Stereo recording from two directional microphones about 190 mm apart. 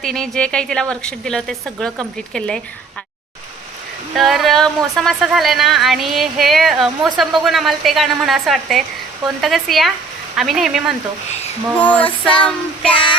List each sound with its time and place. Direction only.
0.0 s speech: centre (ahead or behind)
4.1 s speech: centre (ahead or behind)
11.8 s female singing: 10° left (ahead or behind)
12.9 s child singing: 25° left (ahead or behind)